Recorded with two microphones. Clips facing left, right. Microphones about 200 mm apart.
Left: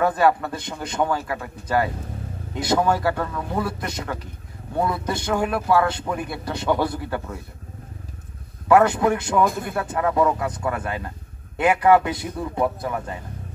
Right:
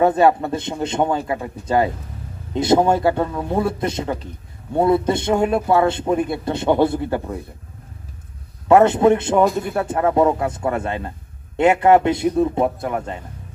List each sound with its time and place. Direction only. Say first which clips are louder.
0.0 s a man's voice: right 4 dB; 25° right (ahead or behind)
8.6 s a man's voice: right 4 dB; 25° right (ahead or behind)